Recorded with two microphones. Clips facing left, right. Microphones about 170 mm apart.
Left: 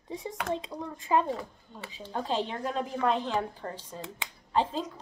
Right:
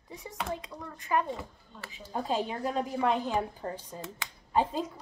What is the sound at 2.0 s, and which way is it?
Speech, 10° right (ahead or behind).